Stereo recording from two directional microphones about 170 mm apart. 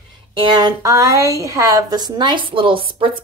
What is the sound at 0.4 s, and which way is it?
A woman's voice, 25° right (ahead or behind).